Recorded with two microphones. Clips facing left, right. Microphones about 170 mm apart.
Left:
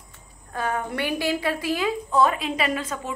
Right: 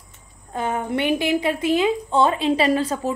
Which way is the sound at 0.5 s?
25° right (ahead or behind).